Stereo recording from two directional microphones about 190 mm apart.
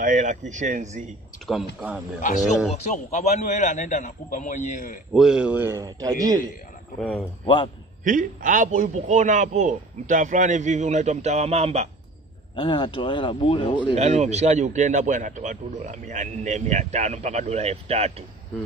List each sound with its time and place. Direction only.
0.0 s a man's voice: 40° right (ahead or behind)
2.7 s a man's voice: 40° left (ahead or behind)
5.1 s a man's voice: 5° right (ahead or behind); by 6.4 s 20° right (ahead or behind)
7.0 s speech: centre (ahead or behind)
7.4 s a man's voice: 25° left (ahead or behind)
8.0 s a man's voice: 45° right (ahead or behind)
12.5 s a man's voice: 25° left (ahead or behind)
13.9 s a man's voice: 35° right (ahead or behind)